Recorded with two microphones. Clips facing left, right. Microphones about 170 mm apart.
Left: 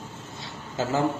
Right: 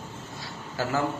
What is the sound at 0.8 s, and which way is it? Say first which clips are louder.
Speech: left 2 dB; 20° left (ahead or behind).